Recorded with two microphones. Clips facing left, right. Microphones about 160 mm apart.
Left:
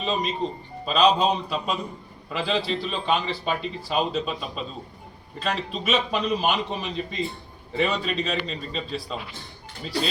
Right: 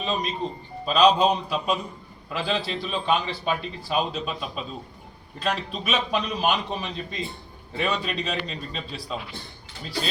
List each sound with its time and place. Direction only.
0.0 s a man's voice: centre (ahead or behind)